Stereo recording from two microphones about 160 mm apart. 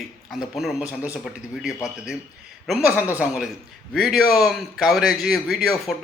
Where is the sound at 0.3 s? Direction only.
5° right (ahead or behind).